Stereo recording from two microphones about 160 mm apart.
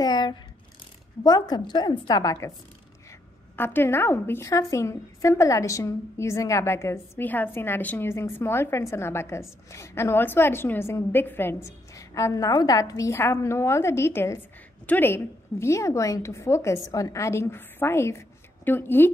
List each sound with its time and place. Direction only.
0.0 s a woman's voice: 25° left (ahead or behind)
3.5 s a woman's voice: 15° left (ahead or behind)